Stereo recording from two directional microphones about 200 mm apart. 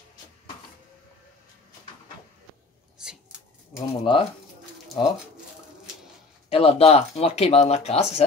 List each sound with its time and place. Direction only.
3.0 s a sound: 5° right (ahead or behind)
3.7 s speech: 25° left (ahead or behind)
6.5 s speech: 30° left (ahead or behind)